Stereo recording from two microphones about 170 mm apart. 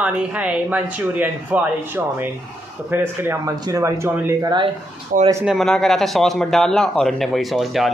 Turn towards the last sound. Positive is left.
turn(degrees=0)  # may be behind; listen again after turning